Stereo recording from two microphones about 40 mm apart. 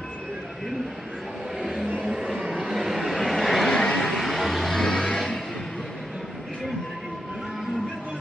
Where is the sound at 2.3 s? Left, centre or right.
Right.